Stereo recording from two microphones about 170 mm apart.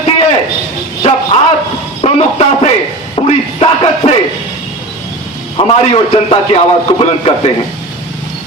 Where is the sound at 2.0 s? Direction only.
35° left (ahead or behind).